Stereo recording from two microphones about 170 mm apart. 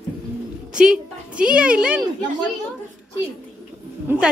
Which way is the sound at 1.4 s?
5° right (ahead or behind).